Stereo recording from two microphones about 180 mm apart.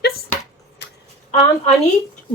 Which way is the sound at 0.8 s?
70° left (ahead or behind).